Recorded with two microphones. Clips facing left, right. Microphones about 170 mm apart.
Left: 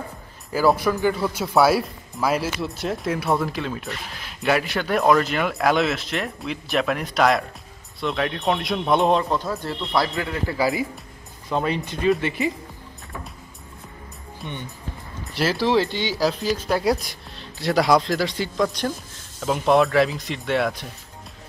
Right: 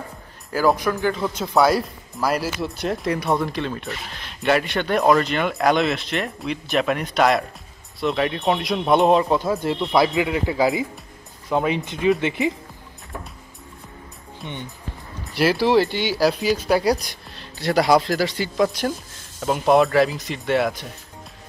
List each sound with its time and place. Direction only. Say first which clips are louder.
0.5 s speech: even; 5° left (ahead or behind)
9.3 s speech: right 5 dB; 15° right (ahead or behind)
15.3 s speech: right 3 dB; 5° right (ahead or behind)